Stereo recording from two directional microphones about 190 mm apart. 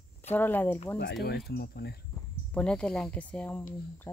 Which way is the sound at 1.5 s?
55° left (ahead or behind).